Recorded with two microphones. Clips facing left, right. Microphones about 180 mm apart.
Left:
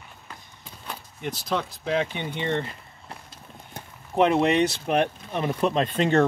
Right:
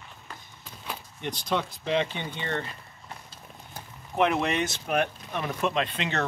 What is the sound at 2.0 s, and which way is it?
Speech, 20° left (ahead or behind).